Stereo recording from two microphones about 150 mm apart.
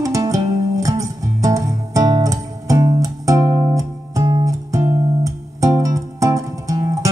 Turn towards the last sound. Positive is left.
turn(degrees=-20)  # may be behind; listen again after turning